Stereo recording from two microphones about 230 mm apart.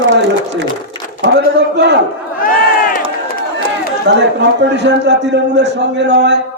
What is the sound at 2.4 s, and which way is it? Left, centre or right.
Crowd, left.